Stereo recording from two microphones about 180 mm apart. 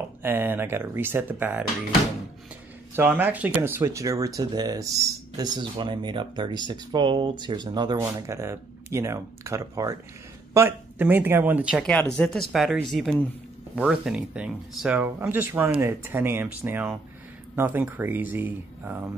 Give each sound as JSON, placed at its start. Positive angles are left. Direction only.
{"t": 0.2, "sound": "speech", "side_deg": -10}
{"t": 3.0, "sound": "speech", "side_deg": -10}